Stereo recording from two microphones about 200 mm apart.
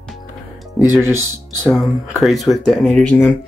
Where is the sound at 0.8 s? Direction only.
15° left (ahead or behind).